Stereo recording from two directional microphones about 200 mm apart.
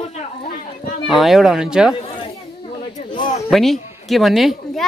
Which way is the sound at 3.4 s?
Centre (ahead or behind).